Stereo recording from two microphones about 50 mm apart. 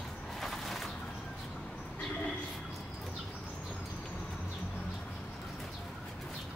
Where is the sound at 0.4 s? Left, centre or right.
Centre.